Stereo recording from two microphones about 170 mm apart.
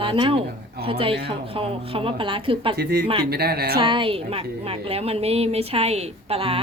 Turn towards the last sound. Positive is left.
turn(degrees=-35)  # may be behind; listen again after turning